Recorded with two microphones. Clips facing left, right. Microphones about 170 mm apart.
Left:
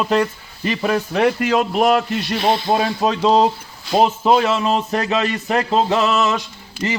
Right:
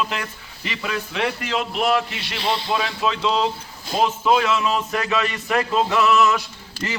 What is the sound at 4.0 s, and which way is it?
A man's voice, 35° left (ahead or behind).